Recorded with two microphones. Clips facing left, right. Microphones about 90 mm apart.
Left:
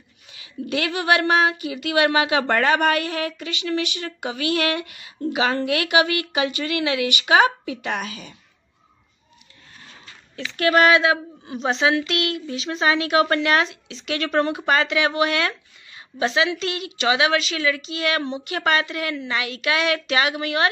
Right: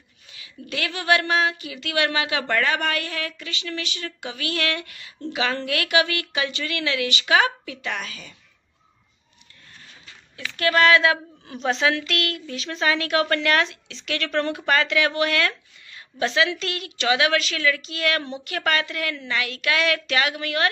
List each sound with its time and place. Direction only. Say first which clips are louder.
0.7 s a woman's voice: left 2 dB; 25° left (ahead or behind)
10.4 s a woman's voice: left 2 dB; 20° left (ahead or behind)